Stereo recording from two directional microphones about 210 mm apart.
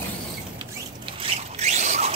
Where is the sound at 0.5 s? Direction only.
25° right (ahead or behind).